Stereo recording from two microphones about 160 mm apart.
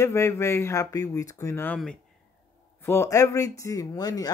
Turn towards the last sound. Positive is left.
turn(degrees=25)  # may be behind; listen again after turning